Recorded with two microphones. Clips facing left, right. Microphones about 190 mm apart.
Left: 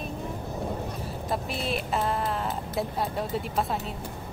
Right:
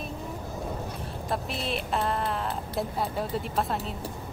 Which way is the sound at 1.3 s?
Centre (ahead or behind).